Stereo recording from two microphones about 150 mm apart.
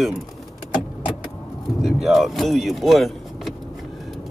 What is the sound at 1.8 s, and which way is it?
Speech, centre (ahead or behind).